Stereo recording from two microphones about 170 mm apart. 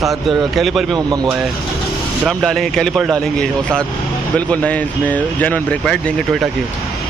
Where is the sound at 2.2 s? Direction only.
Centre (ahead or behind).